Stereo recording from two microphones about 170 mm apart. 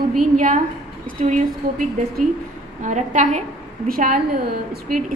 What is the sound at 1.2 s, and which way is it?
Speech, 50° right (ahead or behind).